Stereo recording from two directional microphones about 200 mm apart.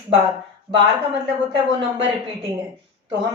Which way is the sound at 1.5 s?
25° right (ahead or behind).